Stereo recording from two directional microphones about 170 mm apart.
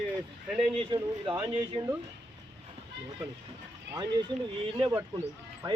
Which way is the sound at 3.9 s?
25° right (ahead or behind).